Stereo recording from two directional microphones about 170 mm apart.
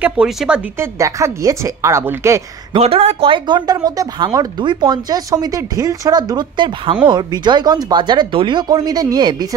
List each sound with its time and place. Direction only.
0.0 s a woman's voice: 5° right (ahead or behind)
0.9 s a woman's voice: 20° right (ahead or behind)
2.7 s speech: 35° right (ahead or behind)